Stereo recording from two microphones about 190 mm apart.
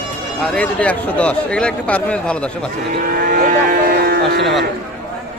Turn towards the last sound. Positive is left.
turn(degrees=-55)  # may be behind; listen again after turning